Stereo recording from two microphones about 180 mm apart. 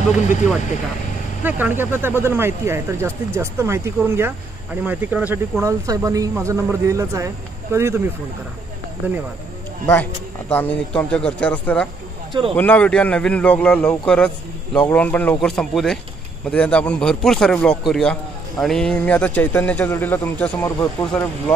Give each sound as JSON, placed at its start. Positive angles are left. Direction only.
{"t": 1.4, "sound": "speech", "side_deg": -10}
{"t": 10.5, "sound": "a man's voice", "side_deg": 10}